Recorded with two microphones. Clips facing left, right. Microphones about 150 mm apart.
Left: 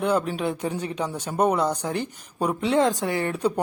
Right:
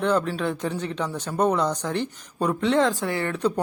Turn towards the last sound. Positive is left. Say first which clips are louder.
# even
turn(degrees=10)  # may be behind; listen again after turning